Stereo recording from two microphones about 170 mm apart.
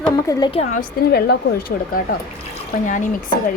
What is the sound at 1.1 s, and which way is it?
Speech, 75° left (ahead or behind).